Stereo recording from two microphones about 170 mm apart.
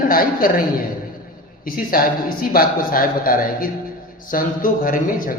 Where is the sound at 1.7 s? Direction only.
55° left (ahead or behind).